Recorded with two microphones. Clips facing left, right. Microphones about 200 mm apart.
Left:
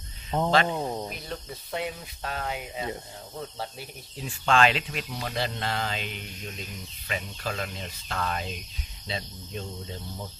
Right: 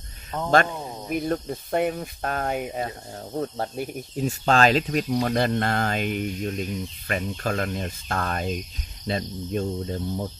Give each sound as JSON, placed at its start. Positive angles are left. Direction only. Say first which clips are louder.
{"t": 0.3, "sound": "speech", "louder": "left 3 dB", "side_deg": 25}
{"t": 0.7, "sound": "speech", "louder": "left 4 dB", "side_deg": 10}
{"t": 1.1, "sound": "speech", "louder": "right 12 dB", "side_deg": -50}